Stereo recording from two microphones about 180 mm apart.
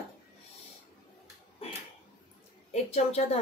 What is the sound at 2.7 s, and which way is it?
Speech, 35° left (ahead or behind).